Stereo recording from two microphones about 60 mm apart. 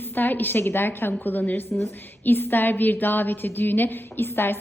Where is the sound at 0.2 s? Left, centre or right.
Left.